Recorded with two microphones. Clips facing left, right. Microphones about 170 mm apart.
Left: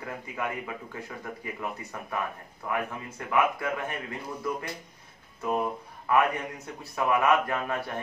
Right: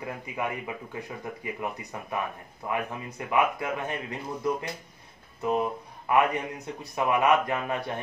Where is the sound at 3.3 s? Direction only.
20° right (ahead or behind).